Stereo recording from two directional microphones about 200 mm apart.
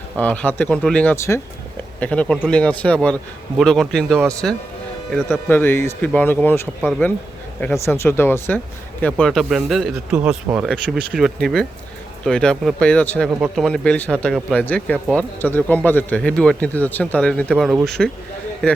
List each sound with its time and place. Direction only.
0.2 s speech: 5° left (ahead or behind)
8.0 s speech: 10° left (ahead or behind)